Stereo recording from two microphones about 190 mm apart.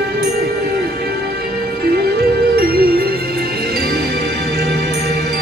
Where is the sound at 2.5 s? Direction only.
55° right (ahead or behind).